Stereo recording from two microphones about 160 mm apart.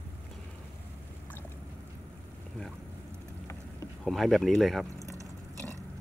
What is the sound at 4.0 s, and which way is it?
Speech, centre (ahead or behind).